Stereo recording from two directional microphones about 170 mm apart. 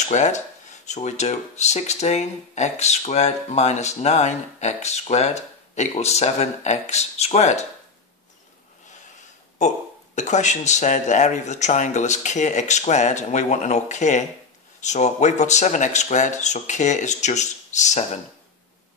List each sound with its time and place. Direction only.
0.1 s speech: 45° left (ahead or behind)
9.6 s speech: 45° left (ahead or behind)